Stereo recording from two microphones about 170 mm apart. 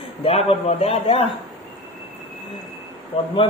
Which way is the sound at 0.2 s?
35° left (ahead or behind).